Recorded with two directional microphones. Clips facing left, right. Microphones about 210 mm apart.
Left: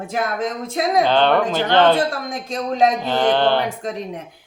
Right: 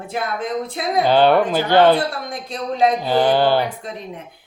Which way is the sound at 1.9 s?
45° left (ahead or behind).